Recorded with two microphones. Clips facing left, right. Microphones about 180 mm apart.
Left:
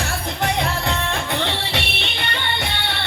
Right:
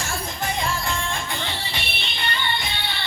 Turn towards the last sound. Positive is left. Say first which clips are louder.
# left 4 dB
turn(degrees=65)  # may be behind; listen again after turning